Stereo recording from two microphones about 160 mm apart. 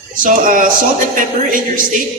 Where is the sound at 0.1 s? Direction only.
60° right (ahead or behind).